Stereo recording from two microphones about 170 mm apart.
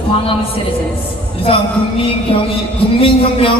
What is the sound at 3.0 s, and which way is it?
Speech, 35° left (ahead or behind).